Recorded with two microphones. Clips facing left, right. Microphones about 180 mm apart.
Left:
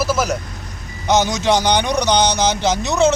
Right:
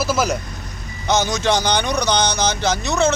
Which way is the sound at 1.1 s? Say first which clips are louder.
Left 2 dB; 15° left (ahead or behind).